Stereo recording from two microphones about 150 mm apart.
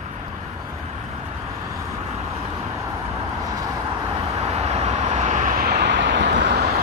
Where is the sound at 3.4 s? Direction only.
25° right (ahead or behind).